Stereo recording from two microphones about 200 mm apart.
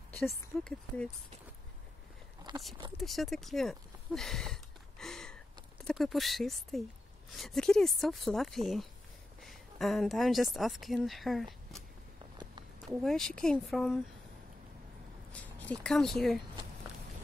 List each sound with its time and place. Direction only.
2.5 s a sound: 20° right (ahead or behind)
3.0 s speech: centre (ahead or behind)
12.9 s speech: centre (ahead or behind)
15.4 s speech: 5° left (ahead or behind)